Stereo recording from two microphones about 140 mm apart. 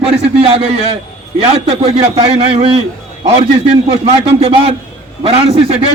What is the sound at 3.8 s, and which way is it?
A man's voice, 45° right (ahead or behind).